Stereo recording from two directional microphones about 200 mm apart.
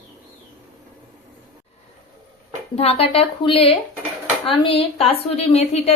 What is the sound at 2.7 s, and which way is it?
A woman's voice, 30° left (ahead or behind).